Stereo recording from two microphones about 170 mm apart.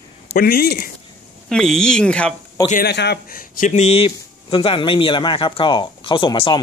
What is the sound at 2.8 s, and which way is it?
Speech, 75° left (ahead or behind).